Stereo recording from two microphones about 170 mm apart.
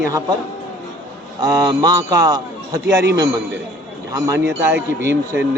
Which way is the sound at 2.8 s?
90° right.